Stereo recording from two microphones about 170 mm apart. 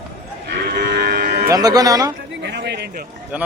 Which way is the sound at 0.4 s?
70° right (ahead or behind).